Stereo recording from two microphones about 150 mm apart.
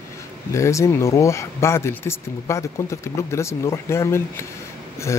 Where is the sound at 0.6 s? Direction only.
20° left (ahead or behind).